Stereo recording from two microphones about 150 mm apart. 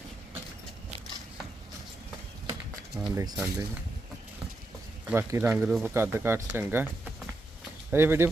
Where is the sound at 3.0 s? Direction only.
20° right (ahead or behind).